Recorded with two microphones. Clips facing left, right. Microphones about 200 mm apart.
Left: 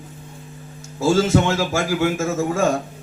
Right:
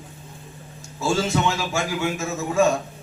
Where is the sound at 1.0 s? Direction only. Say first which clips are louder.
Left 5 dB; 50° left (ahead or behind).